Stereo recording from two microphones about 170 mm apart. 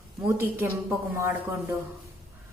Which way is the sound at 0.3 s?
15° right (ahead or behind).